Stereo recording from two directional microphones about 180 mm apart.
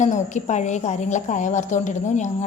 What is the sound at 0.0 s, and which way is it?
Speech, 40° left (ahead or behind).